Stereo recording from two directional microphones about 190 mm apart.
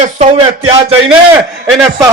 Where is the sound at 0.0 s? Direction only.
35° right (ahead or behind).